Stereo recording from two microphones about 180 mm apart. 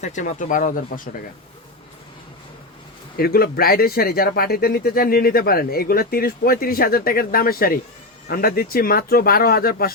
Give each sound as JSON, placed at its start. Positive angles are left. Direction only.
{"t": 0.0, "sound": "speech", "side_deg": 45}
{"t": 3.2, "sound": "speech", "side_deg": 55}